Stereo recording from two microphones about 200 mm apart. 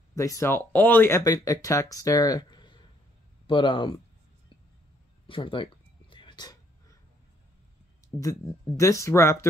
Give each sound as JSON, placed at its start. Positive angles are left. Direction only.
{"t": 0.1, "sound": "speech", "side_deg": 15}
{"t": 5.2, "sound": "a sound", "side_deg": 25}
{"t": 8.2, "sound": "speech", "side_deg": 15}